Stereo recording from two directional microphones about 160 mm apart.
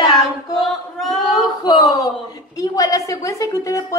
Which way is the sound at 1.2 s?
25° left (ahead or behind).